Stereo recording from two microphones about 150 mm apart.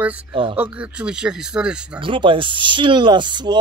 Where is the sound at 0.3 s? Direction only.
35° right (ahead or behind).